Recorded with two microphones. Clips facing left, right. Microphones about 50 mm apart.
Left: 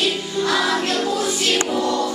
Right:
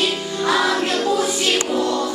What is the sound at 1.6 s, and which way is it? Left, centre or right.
Music, centre.